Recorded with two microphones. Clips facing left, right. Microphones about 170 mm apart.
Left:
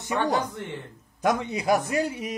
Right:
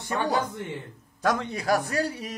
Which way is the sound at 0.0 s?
20° left (ahead or behind).